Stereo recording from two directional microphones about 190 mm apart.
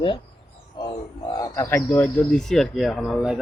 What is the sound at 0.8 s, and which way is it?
Music, 25° left (ahead or behind).